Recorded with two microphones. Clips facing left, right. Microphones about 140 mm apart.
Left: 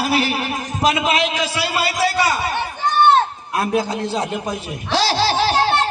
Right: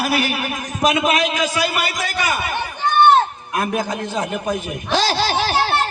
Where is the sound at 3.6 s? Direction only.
35° left (ahead or behind).